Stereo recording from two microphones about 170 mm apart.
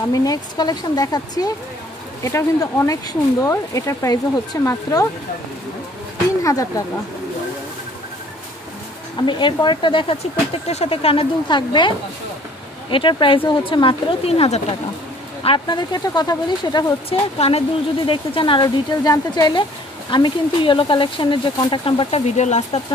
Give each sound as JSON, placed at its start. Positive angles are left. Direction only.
{"t": 0.1, "sound": "speech", "side_deg": 20}
{"t": 6.4, "sound": "speech", "side_deg": 20}
{"t": 9.2, "sound": "speech", "side_deg": 25}
{"t": 12.9, "sound": "a woman's voice", "side_deg": 30}